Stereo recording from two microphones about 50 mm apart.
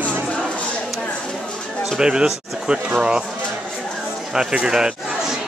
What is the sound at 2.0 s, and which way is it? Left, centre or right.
Speech, centre.